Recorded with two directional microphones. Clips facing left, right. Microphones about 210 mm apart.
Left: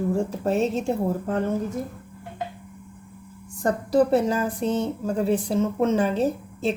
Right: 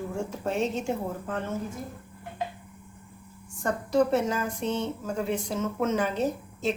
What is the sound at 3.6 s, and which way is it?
Speech, 35° left (ahead or behind).